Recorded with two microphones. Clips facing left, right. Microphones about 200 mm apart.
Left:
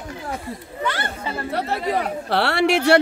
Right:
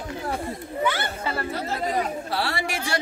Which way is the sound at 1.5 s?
65° left (ahead or behind).